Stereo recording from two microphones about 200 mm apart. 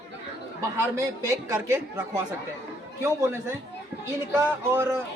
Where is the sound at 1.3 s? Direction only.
15° right (ahead or behind).